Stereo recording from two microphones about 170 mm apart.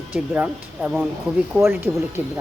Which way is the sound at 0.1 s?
5° right (ahead or behind).